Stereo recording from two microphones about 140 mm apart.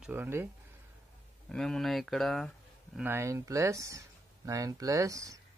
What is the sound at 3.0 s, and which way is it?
Speech, 15° right (ahead or behind).